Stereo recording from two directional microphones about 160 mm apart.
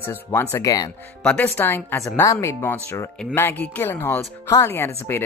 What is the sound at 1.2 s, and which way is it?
Speech, 10° left (ahead or behind).